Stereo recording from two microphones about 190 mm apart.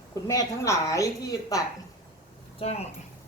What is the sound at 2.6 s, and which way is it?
Speech, 35° left (ahead or behind).